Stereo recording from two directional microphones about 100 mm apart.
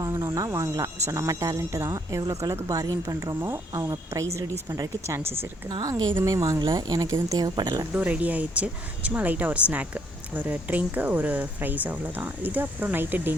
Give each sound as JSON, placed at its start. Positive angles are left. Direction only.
{"t": 0.0, "sound": "a woman's voice", "side_deg": -30}
{"t": 5.6, "sound": "speech", "side_deg": -40}
{"t": 6.6, "sound": "speech", "side_deg": -45}
{"t": 7.9, "sound": "speech", "side_deg": -15}